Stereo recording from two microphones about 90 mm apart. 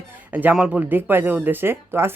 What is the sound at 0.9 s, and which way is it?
Speech, 25° right (ahead or behind).